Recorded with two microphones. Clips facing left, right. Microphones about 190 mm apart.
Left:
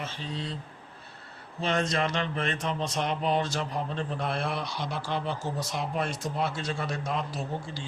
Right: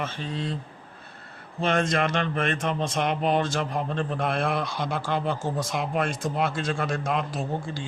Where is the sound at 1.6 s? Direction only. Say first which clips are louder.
Right 4 dB; 55° right (ahead or behind).